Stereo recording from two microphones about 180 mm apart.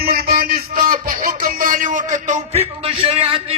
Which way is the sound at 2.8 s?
30° right (ahead or behind).